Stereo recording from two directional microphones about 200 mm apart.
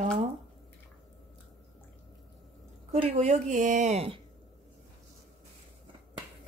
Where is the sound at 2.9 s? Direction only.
35° right (ahead or behind).